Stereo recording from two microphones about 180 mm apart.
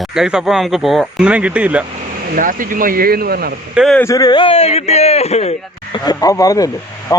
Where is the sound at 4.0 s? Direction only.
20° left (ahead or behind); by 5.5 s 35° left (ahead or behind).